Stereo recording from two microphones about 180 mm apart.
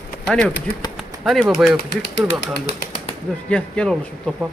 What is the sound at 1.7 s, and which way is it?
Speech, 70° left (ahead or behind).